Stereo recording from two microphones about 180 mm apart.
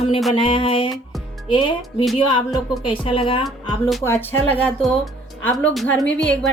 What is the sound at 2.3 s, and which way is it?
Speech, 25° left (ahead or behind).